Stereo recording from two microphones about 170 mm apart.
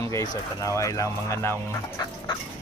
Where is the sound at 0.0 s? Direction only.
20° left (ahead or behind).